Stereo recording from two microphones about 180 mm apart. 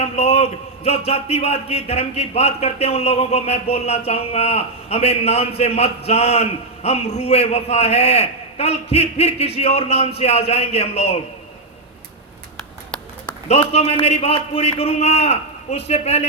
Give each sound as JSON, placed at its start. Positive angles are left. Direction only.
{"t": 0.0, "sound": "a man's voice", "side_deg": 35}
{"t": 12.5, "sound": "a sound", "side_deg": 5}
{"t": 13.7, "sound": "a man's voice", "side_deg": 35}